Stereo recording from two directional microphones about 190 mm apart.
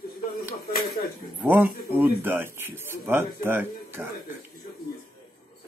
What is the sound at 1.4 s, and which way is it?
Speech, 10° right (ahead or behind).